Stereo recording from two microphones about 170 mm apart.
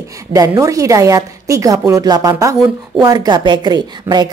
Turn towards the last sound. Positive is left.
turn(degrees=-25)  # may be behind; listen again after turning